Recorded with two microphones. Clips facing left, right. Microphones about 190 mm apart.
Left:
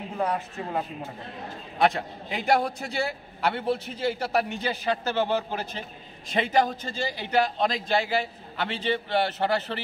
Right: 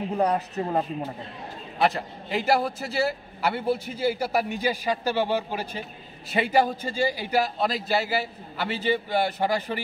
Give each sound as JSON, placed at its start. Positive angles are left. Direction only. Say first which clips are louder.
{"t": 0.2, "sound": "a man's voice", "louder": "right 3 dB", "side_deg": -40}
{"t": 1.8, "sound": "a man's voice", "louder": "left 1 dB", "side_deg": 0}